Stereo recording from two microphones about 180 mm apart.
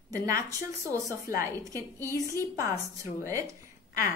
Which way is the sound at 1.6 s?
15° right (ahead or behind).